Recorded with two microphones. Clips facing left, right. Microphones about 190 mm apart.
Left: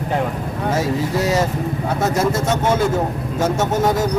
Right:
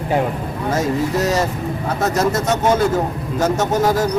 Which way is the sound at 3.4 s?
10° left (ahead or behind).